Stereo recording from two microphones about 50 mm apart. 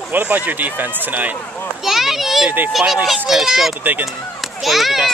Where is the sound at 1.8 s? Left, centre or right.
Centre.